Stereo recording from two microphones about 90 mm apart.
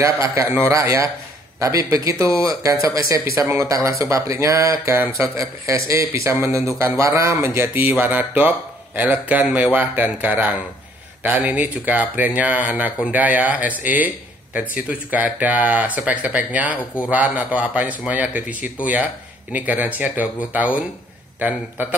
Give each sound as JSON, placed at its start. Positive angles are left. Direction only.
{"t": 0.0, "sound": "speech", "side_deg": -35}